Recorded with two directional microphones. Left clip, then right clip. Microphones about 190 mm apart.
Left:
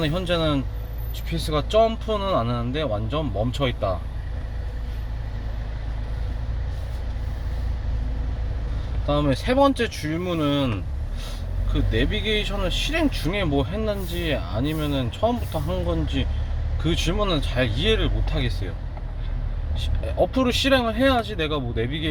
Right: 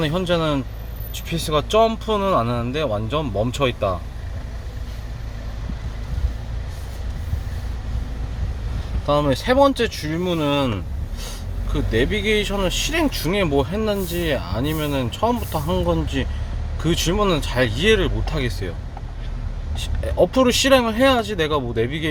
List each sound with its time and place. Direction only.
0.0 s speech: 25° right (ahead or behind)
9.0 s speech: 25° right (ahead or behind)
19.7 s speech: 45° right (ahead or behind)